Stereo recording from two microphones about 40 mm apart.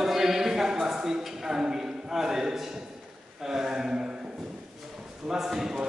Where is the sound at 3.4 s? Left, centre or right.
Centre.